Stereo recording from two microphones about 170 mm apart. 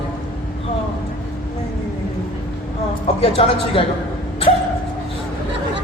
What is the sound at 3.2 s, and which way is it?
Speech, 35° left (ahead or behind).